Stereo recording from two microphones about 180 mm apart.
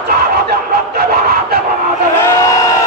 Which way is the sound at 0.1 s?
60° right (ahead or behind).